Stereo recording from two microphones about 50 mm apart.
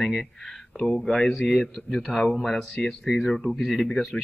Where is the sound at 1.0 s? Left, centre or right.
Centre.